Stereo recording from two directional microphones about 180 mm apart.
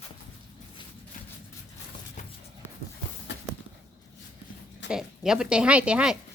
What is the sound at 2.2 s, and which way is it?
Music, 45° left (ahead or behind).